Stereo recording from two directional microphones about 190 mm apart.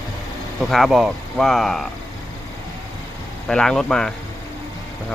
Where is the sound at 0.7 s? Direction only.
Centre (ahead or behind).